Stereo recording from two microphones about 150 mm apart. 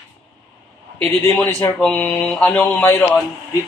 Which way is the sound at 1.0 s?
15° left (ahead or behind).